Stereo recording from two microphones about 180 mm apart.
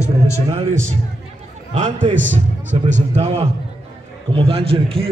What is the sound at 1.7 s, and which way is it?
A man's voice, 40° right (ahead or behind).